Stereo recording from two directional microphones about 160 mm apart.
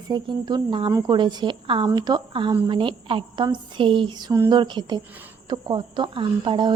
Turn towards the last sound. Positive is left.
turn(degrees=-30)  # may be behind; listen again after turning